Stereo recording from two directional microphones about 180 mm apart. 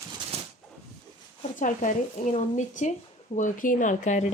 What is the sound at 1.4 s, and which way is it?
Speech, 45° left (ahead or behind).